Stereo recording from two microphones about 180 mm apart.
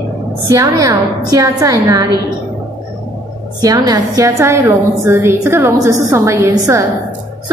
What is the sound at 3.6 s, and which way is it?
A woman's voice, 20° right (ahead or behind).